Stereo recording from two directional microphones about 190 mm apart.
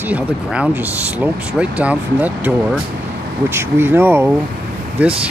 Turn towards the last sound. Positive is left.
turn(degrees=-5)  # may be behind; listen again after turning